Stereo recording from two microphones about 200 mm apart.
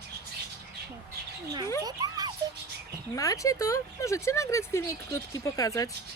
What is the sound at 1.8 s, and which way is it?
Speech, 20° right (ahead or behind).